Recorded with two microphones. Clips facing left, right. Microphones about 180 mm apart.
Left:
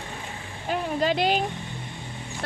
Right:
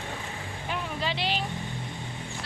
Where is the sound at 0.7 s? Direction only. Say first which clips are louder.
Left 8 dB; 45° left (ahead or behind).